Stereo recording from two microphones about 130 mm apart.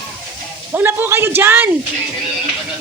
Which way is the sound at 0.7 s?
15° right (ahead or behind).